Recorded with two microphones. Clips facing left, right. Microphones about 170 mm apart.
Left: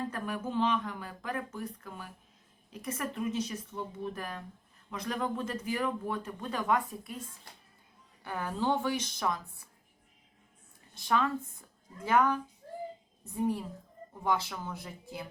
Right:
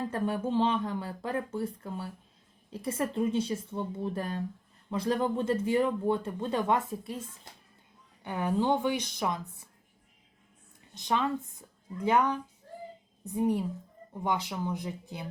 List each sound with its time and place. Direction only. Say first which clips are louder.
0.1 s speech: right 5 dB; 30° right (ahead or behind)
8.2 s a woman's voice: right 4 dB; 20° right (ahead or behind)
10.9 s a woman's voice: even; 20° right (ahead or behind)